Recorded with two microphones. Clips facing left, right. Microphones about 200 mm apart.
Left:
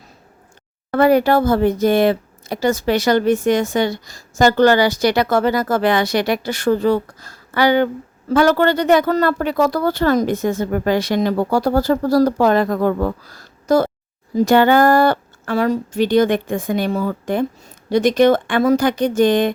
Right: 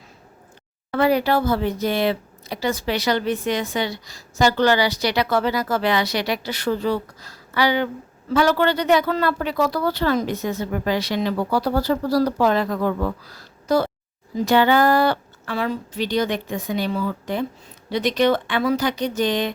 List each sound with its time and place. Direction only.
0.9 s speech: 50° left (ahead or behind)